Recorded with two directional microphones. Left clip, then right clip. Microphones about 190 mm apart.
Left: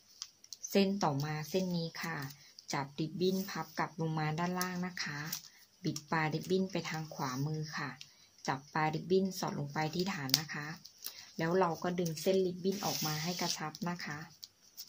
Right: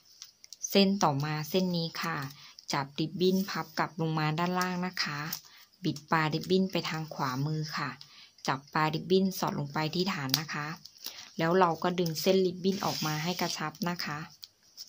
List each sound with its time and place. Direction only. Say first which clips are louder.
0.6 s a woman's voice: right 6 dB; 30° right (ahead or behind)